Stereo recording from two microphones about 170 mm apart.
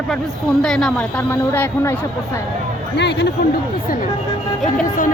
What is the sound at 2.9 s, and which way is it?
Speech, 90° left.